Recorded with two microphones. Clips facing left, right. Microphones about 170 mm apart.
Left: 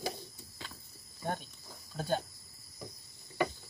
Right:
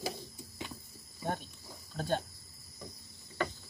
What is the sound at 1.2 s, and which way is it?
Cricket, centre (ahead or behind).